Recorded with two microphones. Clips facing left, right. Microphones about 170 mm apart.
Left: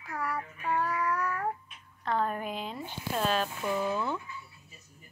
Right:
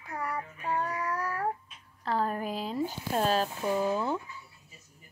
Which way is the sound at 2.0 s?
35° right (ahead or behind).